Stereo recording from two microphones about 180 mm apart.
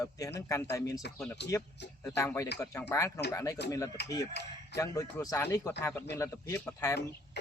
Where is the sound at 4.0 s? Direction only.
70° left (ahead or behind).